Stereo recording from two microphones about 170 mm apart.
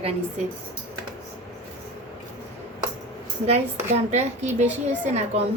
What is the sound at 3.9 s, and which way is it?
Speech, 40° right (ahead or behind).